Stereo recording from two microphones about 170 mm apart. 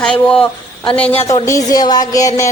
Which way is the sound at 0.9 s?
10° left (ahead or behind).